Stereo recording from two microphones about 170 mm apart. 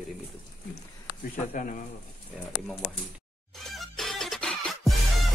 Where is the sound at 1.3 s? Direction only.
50° left (ahead or behind).